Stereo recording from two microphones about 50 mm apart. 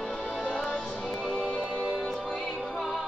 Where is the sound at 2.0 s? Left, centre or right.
Centre.